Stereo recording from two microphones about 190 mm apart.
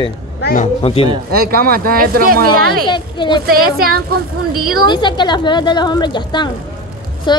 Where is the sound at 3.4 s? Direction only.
50° right (ahead or behind).